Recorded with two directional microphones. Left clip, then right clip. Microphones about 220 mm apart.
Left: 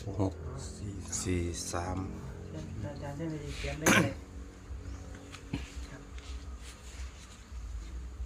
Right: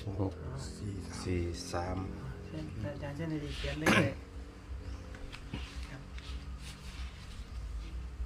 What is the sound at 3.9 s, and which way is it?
Speech, 15° left (ahead or behind).